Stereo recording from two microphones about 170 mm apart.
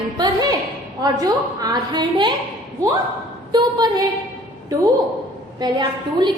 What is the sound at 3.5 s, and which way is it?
Speech, 25° right (ahead or behind).